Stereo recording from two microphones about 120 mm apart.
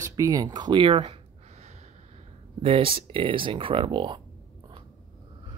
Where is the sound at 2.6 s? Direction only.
50° right (ahead or behind).